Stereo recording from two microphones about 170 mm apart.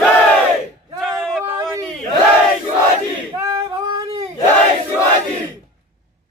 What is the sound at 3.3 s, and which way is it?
Singing, 25° right (ahead or behind).